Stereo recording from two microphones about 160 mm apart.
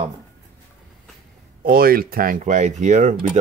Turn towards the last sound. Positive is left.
turn(degrees=-50)  # may be behind; listen again after turning